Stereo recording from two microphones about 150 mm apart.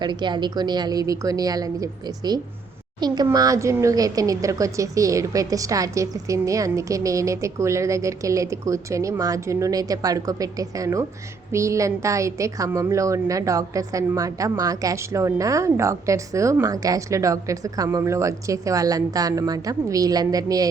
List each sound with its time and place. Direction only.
0.0 s a woman's voice: 30° right (ahead or behind)